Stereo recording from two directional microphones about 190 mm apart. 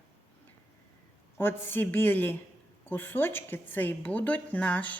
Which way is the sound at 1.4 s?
10° left (ahead or behind).